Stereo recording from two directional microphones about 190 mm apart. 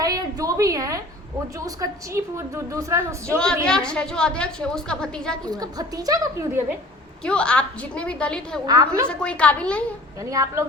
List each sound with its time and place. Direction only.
0.0 s a sound: 20° right (ahead or behind)
1.5 s a woman's voice: 15° right (ahead or behind)
3.3 s a woman's voice: 5° left (ahead or behind)
5.5 s a woman's voice: 20° right (ahead or behind)
7.3 s a woman's voice: 5° left (ahead or behind)
8.6 s a woman's voice: 20° right (ahead or behind)
9.0 s a woman's voice: 5° left (ahead or behind)
10.2 s a woman's voice: 15° right (ahead or behind)